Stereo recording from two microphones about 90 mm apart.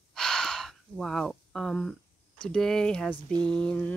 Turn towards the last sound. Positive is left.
turn(degrees=10)  # may be behind; listen again after turning